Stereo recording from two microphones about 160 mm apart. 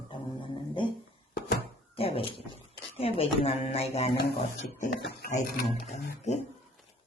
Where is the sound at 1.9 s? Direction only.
35° left (ahead or behind).